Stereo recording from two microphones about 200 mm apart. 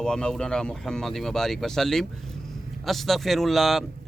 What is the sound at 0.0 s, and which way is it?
Speech, 5° left (ahead or behind).